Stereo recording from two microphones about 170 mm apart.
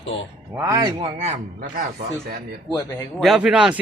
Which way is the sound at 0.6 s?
20° right (ahead or behind).